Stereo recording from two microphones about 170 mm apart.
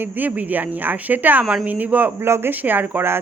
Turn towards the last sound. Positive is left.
turn(degrees=-10)  # may be behind; listen again after turning